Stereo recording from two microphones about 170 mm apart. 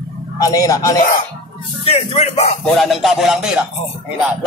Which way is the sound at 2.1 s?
40° left (ahead or behind).